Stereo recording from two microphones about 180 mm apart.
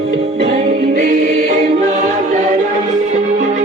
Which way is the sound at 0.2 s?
35° right (ahead or behind).